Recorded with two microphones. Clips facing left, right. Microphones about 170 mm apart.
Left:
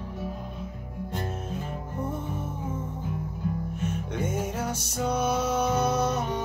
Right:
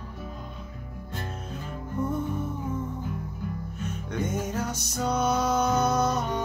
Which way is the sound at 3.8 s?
10° left (ahead or behind).